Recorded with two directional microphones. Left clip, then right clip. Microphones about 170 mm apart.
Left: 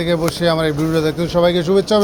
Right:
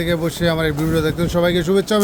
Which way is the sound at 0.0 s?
20° right (ahead or behind).